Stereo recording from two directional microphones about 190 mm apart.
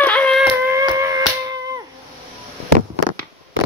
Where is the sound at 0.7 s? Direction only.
15° right (ahead or behind).